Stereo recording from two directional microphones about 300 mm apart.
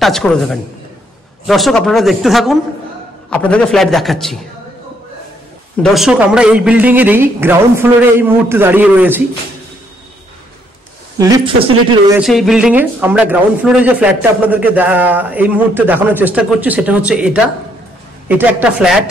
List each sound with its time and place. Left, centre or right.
0.0 s speech: centre
5.8 s a man's voice: centre
11.1 s a man's voice: centre
12.2 s speech: centre